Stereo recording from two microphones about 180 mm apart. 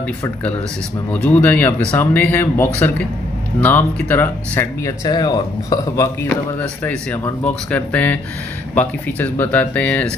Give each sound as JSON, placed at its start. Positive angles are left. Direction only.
{"t": 1.1, "sound": "speech", "side_deg": 10}